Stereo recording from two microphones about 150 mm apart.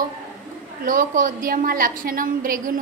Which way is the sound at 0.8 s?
60° right (ahead or behind).